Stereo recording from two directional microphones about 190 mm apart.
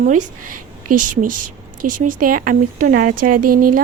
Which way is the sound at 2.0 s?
45° right (ahead or behind).